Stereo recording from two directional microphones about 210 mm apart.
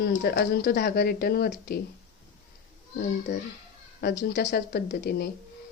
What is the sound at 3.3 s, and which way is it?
Speech, 55° left (ahead or behind).